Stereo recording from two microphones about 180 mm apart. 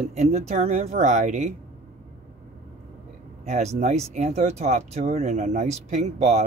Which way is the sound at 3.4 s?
40° right (ahead or behind).